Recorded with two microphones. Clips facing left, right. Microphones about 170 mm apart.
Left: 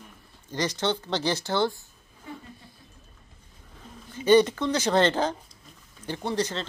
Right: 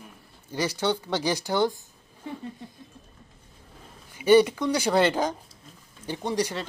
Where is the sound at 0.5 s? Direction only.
10° right (ahead or behind).